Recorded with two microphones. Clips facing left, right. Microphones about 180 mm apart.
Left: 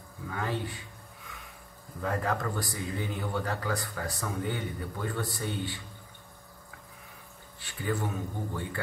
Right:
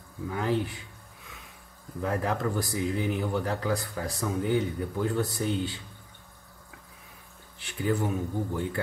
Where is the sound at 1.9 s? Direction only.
20° right (ahead or behind).